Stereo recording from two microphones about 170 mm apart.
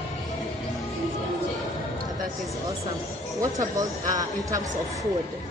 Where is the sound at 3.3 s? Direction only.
20° right (ahead or behind).